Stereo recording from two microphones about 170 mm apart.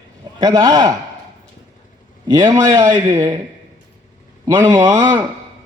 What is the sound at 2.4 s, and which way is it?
Speech, 20° right (ahead or behind).